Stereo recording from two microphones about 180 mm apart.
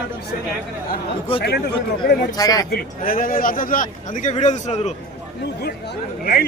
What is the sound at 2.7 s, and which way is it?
A man's voice, 55° left (ahead or behind).